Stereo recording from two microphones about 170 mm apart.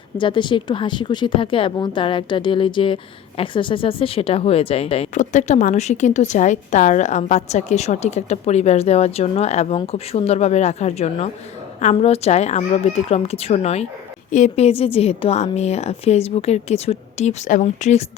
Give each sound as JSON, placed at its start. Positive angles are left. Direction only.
{"t": 0.2, "sound": "speech", "side_deg": 30}